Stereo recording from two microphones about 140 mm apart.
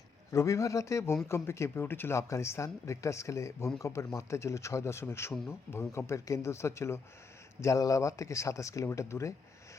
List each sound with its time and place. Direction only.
0.3 s speech: 20° left (ahead or behind)